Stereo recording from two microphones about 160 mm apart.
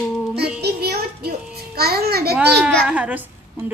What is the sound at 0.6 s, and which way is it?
A child's voice, 85° right.